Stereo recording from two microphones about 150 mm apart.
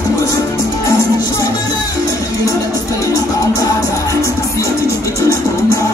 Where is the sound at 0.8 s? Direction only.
20° left (ahead or behind).